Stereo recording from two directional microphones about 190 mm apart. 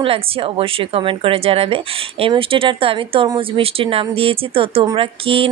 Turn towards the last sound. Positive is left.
turn(degrees=-30)  # may be behind; listen again after turning